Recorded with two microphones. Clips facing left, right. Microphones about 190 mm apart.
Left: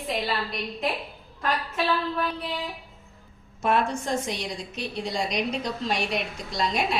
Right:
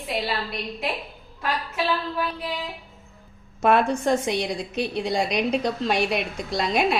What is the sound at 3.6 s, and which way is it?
A woman's voice, 60° right (ahead or behind).